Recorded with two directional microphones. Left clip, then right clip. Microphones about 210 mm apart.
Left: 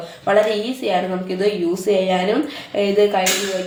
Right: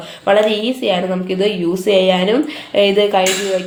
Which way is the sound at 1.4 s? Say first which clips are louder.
Right 1 dB; 40° right (ahead or behind).